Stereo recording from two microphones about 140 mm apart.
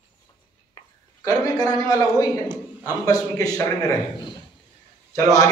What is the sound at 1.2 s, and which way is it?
A man's voice, 25° left (ahead or behind).